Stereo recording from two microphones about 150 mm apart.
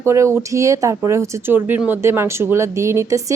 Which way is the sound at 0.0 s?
20° right (ahead or behind).